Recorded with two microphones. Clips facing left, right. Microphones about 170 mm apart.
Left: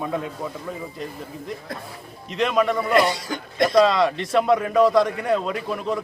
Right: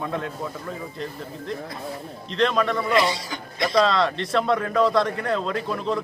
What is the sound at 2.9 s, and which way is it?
Speech, 50° left (ahead or behind).